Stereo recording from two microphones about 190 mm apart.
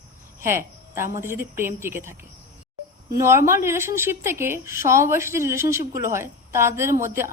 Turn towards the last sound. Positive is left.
turn(degrees=-15)  # may be behind; listen again after turning